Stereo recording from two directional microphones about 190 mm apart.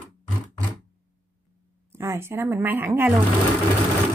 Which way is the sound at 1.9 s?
15° right (ahead or behind).